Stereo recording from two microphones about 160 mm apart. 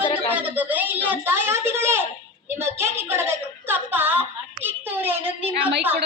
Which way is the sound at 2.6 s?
15° right (ahead or behind).